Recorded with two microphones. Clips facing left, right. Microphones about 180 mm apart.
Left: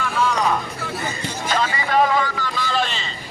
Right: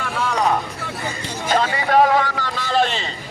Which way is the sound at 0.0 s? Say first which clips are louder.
Left 2 dB; 55° right (ahead or behind).